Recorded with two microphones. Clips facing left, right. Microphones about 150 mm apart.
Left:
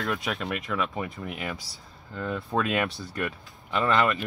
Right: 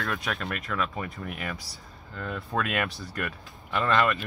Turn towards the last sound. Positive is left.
turn(degrees=20)  # may be behind; listen again after turning